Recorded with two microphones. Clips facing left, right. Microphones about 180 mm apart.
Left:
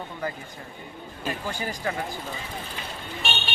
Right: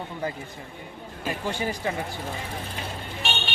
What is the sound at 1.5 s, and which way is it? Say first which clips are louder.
Speech: right 6 dB; 25° right (ahead or behind).